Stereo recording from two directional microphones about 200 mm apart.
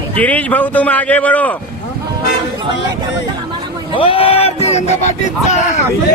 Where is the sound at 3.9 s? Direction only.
25° left (ahead or behind).